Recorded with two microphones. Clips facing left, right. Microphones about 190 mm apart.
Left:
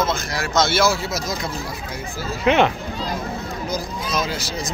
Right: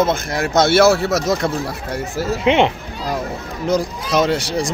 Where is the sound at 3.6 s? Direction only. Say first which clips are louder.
Right 10 dB; 80° right.